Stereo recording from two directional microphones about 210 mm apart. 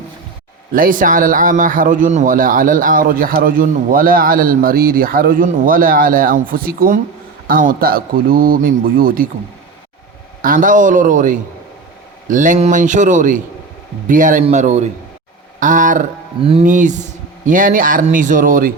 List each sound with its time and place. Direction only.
0.7 s speech: 40° right (ahead or behind)
10.4 s speech: 40° right (ahead or behind)